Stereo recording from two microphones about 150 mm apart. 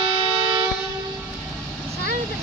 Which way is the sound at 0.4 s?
25° right (ahead or behind).